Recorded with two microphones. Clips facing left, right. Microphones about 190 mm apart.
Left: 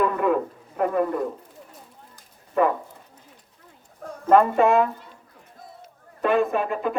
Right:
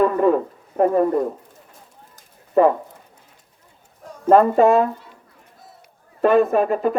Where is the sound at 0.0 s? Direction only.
35° right (ahead or behind).